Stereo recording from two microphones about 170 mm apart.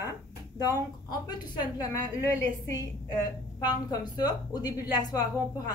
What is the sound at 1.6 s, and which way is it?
A woman's voice, 20° left (ahead or behind).